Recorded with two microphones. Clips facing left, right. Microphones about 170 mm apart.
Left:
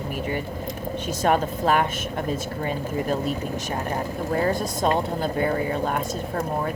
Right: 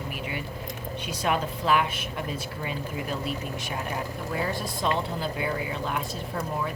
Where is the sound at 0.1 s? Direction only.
45° left (ahead or behind).